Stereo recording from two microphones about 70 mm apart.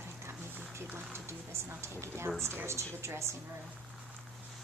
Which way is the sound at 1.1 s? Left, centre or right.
Right.